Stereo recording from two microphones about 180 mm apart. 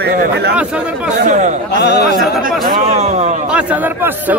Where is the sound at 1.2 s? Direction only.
40° right (ahead or behind).